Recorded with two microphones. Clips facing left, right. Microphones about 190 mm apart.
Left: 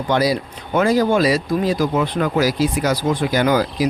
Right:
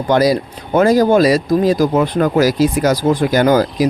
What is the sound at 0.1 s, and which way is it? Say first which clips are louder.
Speech: right 5 dB; 45° right (ahead or behind).